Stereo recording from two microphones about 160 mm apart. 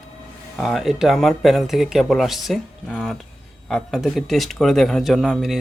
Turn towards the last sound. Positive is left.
turn(degrees=0)  # may be behind; listen again after turning